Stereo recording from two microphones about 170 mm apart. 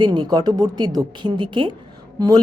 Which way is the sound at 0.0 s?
25° right (ahead or behind).